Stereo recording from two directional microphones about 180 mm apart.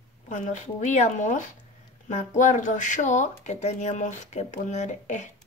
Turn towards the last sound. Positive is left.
turn(degrees=40)  # may be behind; listen again after turning